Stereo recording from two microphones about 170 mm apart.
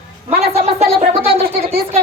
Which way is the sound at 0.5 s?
35° right (ahead or behind).